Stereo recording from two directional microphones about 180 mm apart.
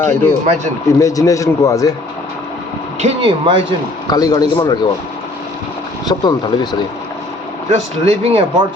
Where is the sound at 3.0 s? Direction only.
30° right (ahead or behind).